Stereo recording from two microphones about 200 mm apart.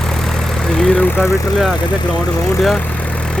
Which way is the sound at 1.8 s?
20° left (ahead or behind).